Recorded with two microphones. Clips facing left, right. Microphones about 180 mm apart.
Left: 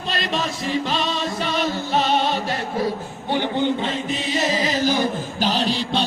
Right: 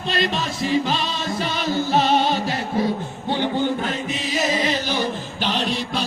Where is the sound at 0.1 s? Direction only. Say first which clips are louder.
Right 1 dB; centre (ahead or behind).